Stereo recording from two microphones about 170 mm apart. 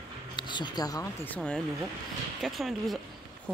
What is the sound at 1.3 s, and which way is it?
Speech, 5° left (ahead or behind).